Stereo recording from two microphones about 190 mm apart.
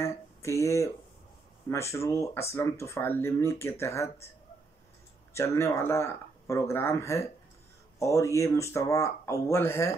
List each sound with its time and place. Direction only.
0.0 s a sound: 15° left (ahead or behind)
1.7 s speech: 15° left (ahead or behind)
5.3 s speech: 15° left (ahead or behind)